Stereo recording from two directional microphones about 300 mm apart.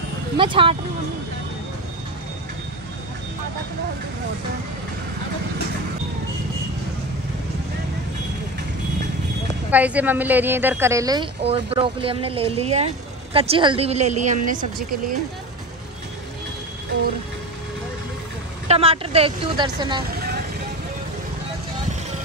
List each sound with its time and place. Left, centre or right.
0.4 s a woman's voice: centre
9.7 s a woman's voice: centre; by 15.1 s right
18.7 s a woman's voice: centre